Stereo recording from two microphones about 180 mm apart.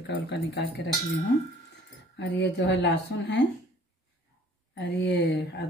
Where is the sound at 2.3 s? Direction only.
75° left (ahead or behind).